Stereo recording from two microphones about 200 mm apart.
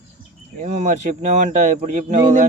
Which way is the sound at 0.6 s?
40° right (ahead or behind).